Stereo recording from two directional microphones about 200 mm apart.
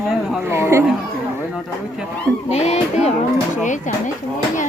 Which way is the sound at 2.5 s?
30° left (ahead or behind).